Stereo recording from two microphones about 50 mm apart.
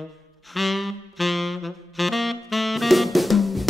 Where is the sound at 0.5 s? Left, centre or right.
Centre.